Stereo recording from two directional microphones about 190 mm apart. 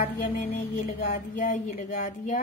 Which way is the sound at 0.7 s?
50° left (ahead or behind).